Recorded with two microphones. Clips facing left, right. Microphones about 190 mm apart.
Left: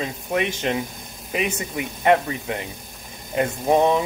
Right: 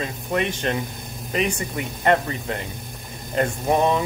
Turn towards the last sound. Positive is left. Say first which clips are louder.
# left 2 dB
turn(degrees=15)  # may be behind; listen again after turning